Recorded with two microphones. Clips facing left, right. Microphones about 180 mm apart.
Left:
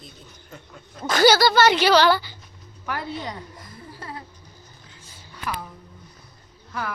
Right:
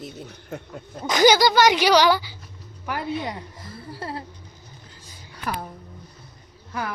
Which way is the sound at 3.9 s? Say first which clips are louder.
Right 5 dB; 30° right (ahead or behind).